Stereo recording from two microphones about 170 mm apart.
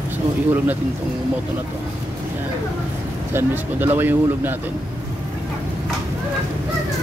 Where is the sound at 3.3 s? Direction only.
10° right (ahead or behind).